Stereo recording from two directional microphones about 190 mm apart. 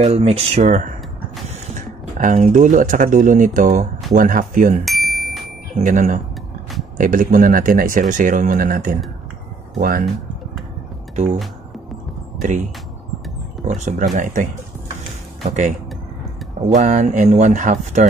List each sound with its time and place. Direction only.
0.0 s speech: 35° right (ahead or behind)
4.8 s a sound: centre (ahead or behind)
5.8 s speech: 40° right (ahead or behind)
12.4 s speech: 40° right (ahead or behind)
13.7 s speech: 40° right (ahead or behind)
16.6 s speech: 40° right (ahead or behind)